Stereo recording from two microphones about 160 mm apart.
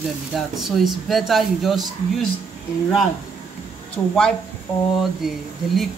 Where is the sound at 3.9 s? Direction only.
5° left (ahead or behind).